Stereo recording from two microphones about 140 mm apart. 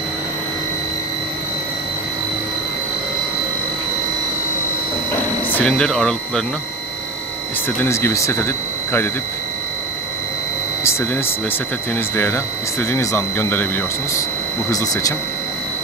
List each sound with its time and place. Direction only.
5.5 s speech: 10° left (ahead or behind)
7.8 s speech: 15° left (ahead or behind)
10.8 s a sound: 20° left (ahead or behind)
11.9 s speech: 10° left (ahead or behind)
14.7 s speech: 25° left (ahead or behind)